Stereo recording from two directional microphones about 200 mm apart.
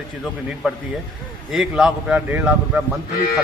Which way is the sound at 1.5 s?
5° right (ahead or behind).